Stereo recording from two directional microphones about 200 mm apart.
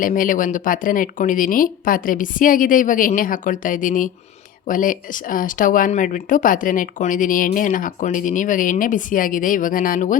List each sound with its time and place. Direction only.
0.0 s speech: 40° left (ahead or behind)